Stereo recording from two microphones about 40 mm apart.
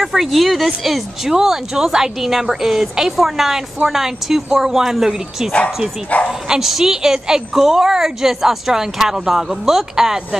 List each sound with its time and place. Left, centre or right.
0.0 s speech: centre
6.1 s speech: left
6.6 s speech: centre